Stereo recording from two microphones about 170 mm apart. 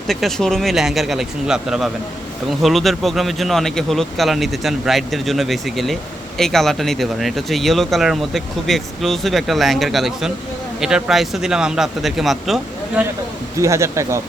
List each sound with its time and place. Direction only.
0.1 s speech: centre (ahead or behind)
13.6 s speech: 15° right (ahead or behind)